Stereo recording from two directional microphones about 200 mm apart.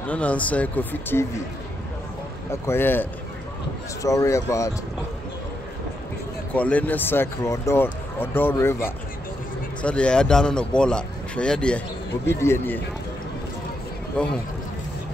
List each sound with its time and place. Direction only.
0.0 s speech: 5° left (ahead or behind)
2.6 s speech: 10° left (ahead or behind)
6.5 s speech: 5° left (ahead or behind)